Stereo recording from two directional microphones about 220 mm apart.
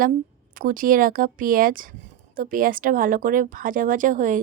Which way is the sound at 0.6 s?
40° right (ahead or behind).